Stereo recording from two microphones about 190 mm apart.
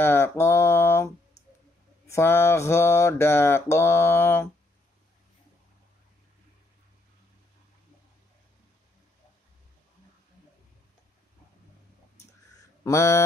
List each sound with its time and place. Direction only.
0.0 s mantra: 15° left (ahead or behind)
12.8 s mantra: 15° left (ahead or behind)